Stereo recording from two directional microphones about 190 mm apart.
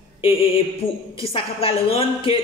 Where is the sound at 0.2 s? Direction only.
30° left (ahead or behind).